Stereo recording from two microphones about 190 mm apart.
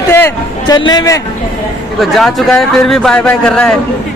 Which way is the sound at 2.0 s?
Centre (ahead or behind).